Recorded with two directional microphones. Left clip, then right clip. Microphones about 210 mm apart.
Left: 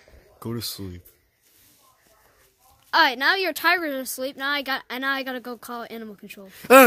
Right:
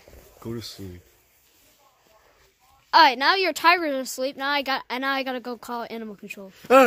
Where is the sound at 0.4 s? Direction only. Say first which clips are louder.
Left 3 dB; 50° left (ahead or behind).